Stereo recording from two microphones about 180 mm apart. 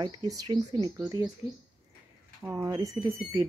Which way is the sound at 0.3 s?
20° right (ahead or behind).